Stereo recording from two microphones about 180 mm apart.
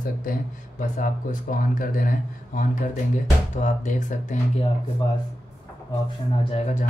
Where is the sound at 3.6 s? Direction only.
45° left (ahead or behind).